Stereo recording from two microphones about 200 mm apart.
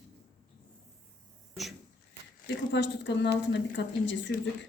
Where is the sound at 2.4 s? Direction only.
60° left (ahead or behind).